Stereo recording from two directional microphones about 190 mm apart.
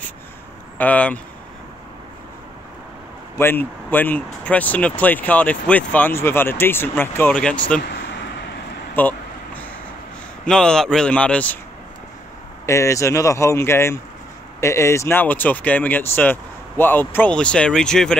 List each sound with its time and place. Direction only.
0.7 s speech: 5° left (ahead or behind)
3.3 s speech: 10° left (ahead or behind)
8.9 s vehicle: 10° left (ahead or behind)
10.4 s a man's voice: 5° left (ahead or behind)
12.6 s speech: 15° left (ahead or behind)